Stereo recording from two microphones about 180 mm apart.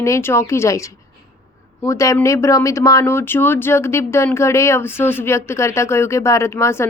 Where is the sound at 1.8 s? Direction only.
15° left (ahead or behind).